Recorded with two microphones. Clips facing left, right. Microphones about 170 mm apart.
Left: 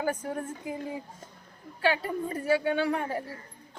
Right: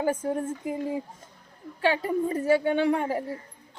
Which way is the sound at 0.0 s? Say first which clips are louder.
Right 4 dB; 25° right (ahead or behind).